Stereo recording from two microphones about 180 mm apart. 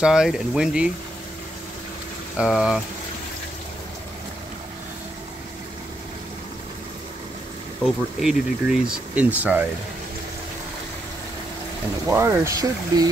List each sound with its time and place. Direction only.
0.0 s speech: 5° right (ahead or behind)
2.3 s speech: 5° right (ahead or behind)
7.8 s speech: centre (ahead or behind)
12.1 s speech: 15° right (ahead or behind)